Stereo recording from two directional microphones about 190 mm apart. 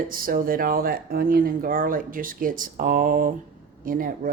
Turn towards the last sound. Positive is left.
turn(degrees=-50)  # may be behind; listen again after turning